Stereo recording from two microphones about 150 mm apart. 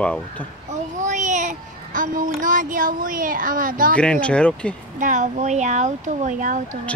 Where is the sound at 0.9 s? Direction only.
55° right (ahead or behind).